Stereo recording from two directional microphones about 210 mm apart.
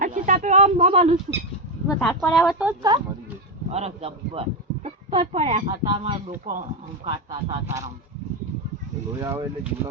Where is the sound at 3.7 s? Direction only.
30° right (ahead or behind).